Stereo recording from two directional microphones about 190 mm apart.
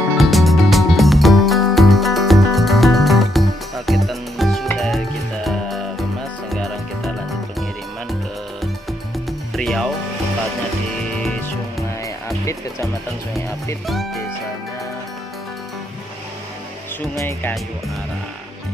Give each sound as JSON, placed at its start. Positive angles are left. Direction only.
{"t": 0.2, "sound": "music", "side_deg": 0}
{"t": 9.6, "sound": "music", "side_deg": 0}
{"t": 11.1, "sound": "music", "side_deg": 5}
{"t": 17.1, "sound": "speech", "side_deg": 15}